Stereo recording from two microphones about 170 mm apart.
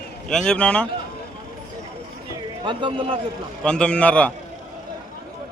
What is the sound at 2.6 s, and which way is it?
Speech, 30° right (ahead or behind).